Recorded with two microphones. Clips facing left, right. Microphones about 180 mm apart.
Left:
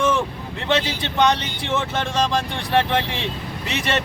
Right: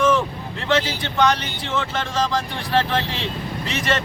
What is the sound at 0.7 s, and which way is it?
Speech, 20° left (ahead or behind).